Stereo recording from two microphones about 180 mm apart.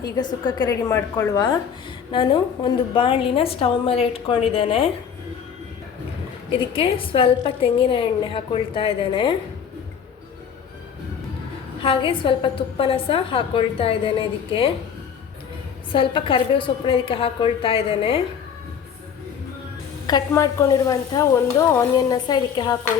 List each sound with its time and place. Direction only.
0.0 s a woman's voice: 25° left (ahead or behind)
6.7 s a woman's voice: 30° left (ahead or behind)
11.8 s a woman's voice: 30° left (ahead or behind)
15.9 s a woman's voice: 30° left (ahead or behind)
20.1 s a woman's voice: 20° left (ahead or behind)